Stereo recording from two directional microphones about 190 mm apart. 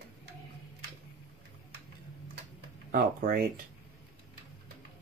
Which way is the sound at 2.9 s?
50° right (ahead or behind).